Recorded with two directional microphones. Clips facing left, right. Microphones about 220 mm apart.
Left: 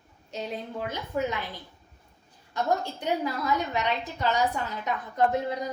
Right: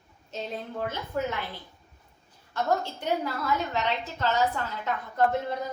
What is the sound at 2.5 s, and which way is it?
A woman's voice, 15° left (ahead or behind).